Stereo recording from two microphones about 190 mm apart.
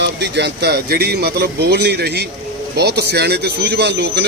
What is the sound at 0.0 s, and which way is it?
Speech, 65° right (ahead or behind).